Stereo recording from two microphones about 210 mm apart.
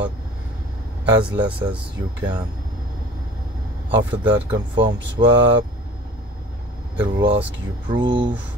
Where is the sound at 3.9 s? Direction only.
25° right (ahead or behind).